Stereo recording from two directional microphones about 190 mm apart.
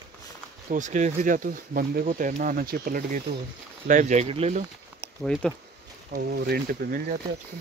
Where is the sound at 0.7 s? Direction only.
40° right (ahead or behind).